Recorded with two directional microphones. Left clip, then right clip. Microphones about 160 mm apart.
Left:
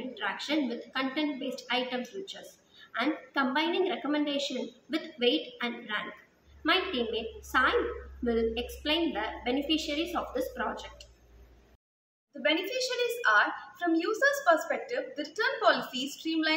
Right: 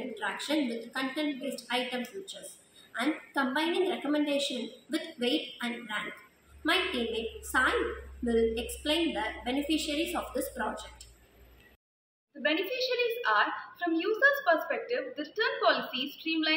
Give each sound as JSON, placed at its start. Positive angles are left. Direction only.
{"t": 0.2, "sound": "a woman's voice", "side_deg": 0}
{"t": 12.4, "sound": "a woman's voice", "side_deg": 15}